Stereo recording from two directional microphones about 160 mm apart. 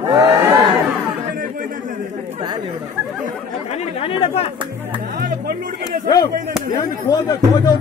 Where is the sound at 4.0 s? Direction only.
35° left (ahead or behind).